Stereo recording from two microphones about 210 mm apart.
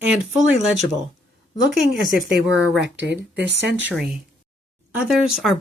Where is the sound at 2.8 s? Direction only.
55° right (ahead or behind).